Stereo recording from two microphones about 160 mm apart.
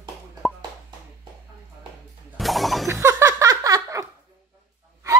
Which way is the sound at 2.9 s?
15° right (ahead or behind).